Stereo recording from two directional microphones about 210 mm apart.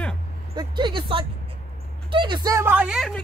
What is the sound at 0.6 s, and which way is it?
Speech, 20° right (ahead or behind).